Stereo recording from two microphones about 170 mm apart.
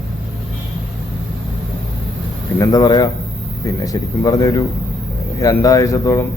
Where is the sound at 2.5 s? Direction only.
20° left (ahead or behind).